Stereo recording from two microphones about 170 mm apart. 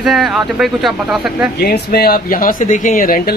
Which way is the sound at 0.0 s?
Centre (ahead or behind).